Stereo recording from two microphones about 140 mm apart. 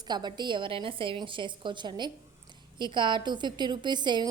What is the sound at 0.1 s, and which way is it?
A woman's voice, 30° right (ahead or behind).